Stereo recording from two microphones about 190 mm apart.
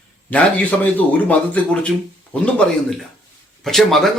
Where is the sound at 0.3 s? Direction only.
5° left (ahead or behind).